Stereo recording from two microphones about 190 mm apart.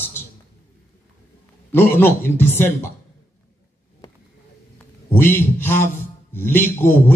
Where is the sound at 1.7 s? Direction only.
10° left (ahead or behind).